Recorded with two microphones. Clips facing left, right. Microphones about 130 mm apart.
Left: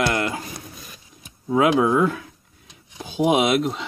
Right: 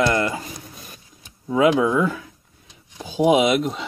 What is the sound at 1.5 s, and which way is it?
Speech, 20° left (ahead or behind).